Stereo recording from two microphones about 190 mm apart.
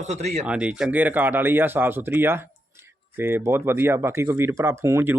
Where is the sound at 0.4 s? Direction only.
5° right (ahead or behind).